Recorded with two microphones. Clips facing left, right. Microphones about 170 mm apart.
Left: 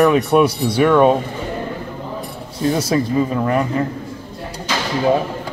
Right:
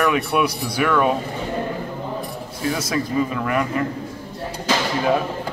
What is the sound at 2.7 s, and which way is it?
Speech, 30° left (ahead or behind).